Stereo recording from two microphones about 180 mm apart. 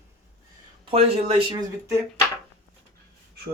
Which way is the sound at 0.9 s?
35° right (ahead or behind).